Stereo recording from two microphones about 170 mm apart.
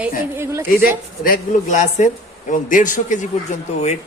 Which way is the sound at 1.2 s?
50° left (ahead or behind).